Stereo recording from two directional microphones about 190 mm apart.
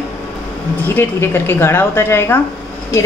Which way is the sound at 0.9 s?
10° left (ahead or behind).